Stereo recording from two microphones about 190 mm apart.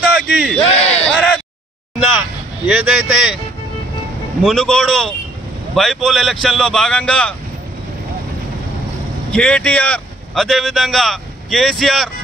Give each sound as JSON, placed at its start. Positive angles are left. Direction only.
{"t": 0.3, "sound": "speech", "side_deg": 0}
{"t": 0.6, "sound": "a sound", "side_deg": 35}
{"t": 1.0, "sound": "bleat", "side_deg": 5}
{"t": 2.6, "sound": "speech", "side_deg": -5}
{"t": 4.4, "sound": "speech", "side_deg": 0}
{"t": 9.3, "sound": "speech", "side_deg": 5}